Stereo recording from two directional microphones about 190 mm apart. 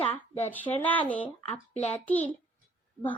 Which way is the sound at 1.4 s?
35° left (ahead or behind).